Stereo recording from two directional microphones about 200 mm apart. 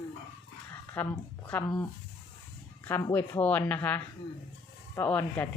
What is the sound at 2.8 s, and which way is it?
Speech, 10° left (ahead or behind).